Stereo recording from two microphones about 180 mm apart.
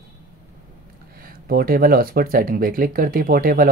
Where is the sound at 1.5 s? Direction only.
55° right (ahead or behind).